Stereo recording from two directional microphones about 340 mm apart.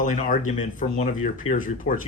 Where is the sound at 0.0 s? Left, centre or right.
Left.